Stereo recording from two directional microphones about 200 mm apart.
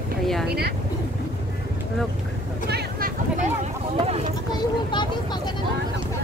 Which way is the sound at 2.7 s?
50° right (ahead or behind).